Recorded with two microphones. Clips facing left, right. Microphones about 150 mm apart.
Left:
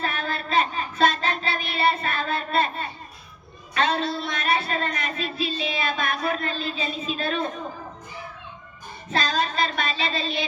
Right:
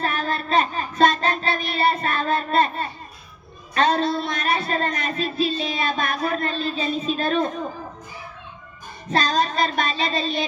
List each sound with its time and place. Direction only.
0.0 s child singing: 40° right (ahead or behind)
3.8 s speech: 40° right (ahead or behind)
9.1 s speech: 40° right (ahead or behind)